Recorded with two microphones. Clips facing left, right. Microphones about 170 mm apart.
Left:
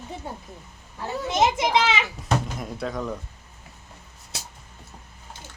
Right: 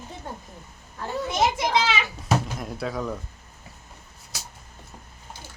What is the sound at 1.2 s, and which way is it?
Children playing, 20° left (ahead or behind).